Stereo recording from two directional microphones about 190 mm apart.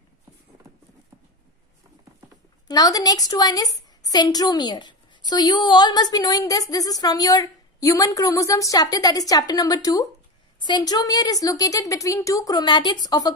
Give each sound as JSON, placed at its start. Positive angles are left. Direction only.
{"t": 2.7, "sound": "a woman's voice", "side_deg": 20}